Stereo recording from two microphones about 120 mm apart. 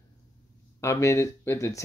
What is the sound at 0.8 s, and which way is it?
Speech, 25° left (ahead or behind).